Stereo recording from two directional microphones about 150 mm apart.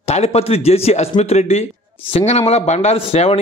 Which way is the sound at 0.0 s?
45° left (ahead or behind).